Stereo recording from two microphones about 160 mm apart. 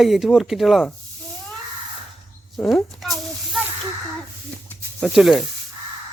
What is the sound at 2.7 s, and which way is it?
Speech, centre (ahead or behind).